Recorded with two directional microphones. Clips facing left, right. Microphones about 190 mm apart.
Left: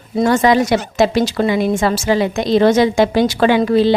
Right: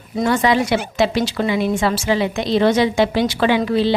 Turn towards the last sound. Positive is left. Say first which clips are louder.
# left 4 dB
turn(degrees=45)  # may be behind; listen again after turning